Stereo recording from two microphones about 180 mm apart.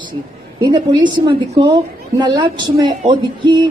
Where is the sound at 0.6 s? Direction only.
25° right (ahead or behind).